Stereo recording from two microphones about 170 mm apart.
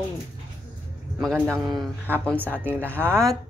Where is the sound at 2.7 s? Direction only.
10° left (ahead or behind).